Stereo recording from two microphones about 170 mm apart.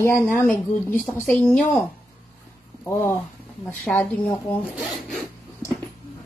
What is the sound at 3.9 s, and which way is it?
Speech, 5° left (ahead or behind).